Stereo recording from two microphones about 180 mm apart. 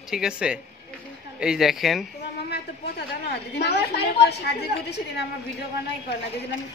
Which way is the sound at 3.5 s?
65° left (ahead or behind).